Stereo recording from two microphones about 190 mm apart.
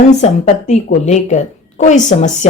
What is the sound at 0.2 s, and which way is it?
Speech, 35° left (ahead or behind).